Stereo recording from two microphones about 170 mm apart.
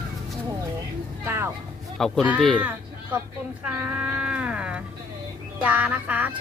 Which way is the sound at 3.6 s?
10° right (ahead or behind).